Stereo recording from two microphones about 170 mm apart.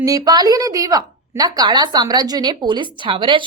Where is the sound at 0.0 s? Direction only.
20° right (ahead or behind).